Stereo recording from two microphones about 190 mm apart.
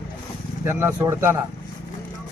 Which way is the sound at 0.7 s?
10° right (ahead or behind).